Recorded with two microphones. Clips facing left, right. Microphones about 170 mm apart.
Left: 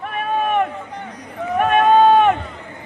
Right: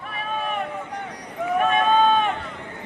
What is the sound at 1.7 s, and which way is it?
Run, 65° left (ahead or behind).